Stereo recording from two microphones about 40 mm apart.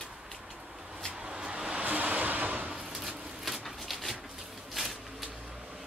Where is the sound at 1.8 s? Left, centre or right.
Right.